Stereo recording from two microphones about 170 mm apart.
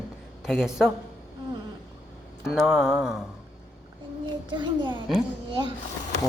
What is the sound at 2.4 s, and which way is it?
Speech, 5° right (ahead or behind).